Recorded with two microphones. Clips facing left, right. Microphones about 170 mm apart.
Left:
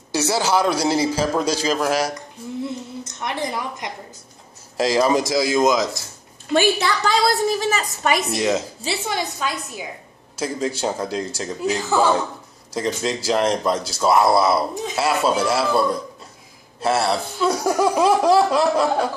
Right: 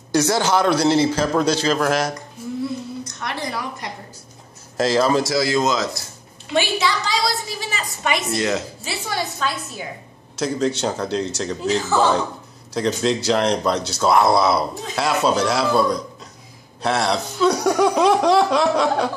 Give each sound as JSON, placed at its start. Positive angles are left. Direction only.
{"t": 0.1, "sound": "speech", "side_deg": 5}
{"t": 2.6, "sound": "a woman's voice", "side_deg": 25}
{"t": 6.5, "sound": "a woman's voice", "side_deg": 50}
{"t": 8.4, "sound": "speech", "side_deg": 15}